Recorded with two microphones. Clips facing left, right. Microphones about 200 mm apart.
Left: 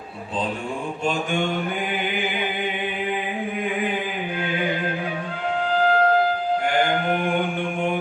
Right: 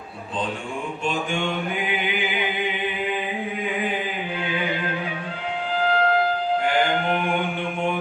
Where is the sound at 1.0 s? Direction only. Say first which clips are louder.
Left 2 dB; 45° left (ahead or behind).